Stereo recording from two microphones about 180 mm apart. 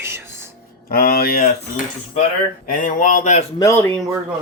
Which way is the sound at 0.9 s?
60° left (ahead or behind).